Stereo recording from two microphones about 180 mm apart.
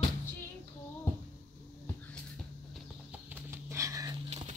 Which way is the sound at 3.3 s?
15° right (ahead or behind).